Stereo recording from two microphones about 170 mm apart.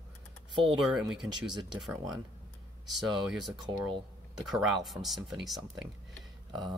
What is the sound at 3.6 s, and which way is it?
Speech, 25° right (ahead or behind).